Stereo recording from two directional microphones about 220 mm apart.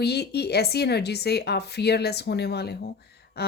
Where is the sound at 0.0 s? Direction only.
50° left (ahead or behind).